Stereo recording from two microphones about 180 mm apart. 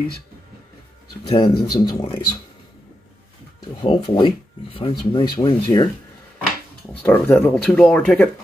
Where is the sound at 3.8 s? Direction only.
25° left (ahead or behind).